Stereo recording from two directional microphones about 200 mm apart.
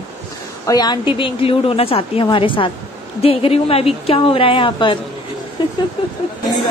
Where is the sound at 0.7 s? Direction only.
20° left (ahead or behind).